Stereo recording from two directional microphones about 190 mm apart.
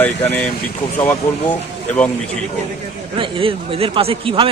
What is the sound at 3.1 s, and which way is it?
Speech, 25° right (ahead or behind).